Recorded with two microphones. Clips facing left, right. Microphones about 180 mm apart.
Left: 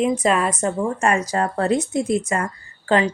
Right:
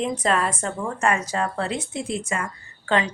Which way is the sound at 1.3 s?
40° left (ahead or behind).